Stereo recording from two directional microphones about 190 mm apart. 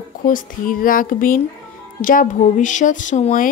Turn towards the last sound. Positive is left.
turn(degrees=40)  # may be behind; listen again after turning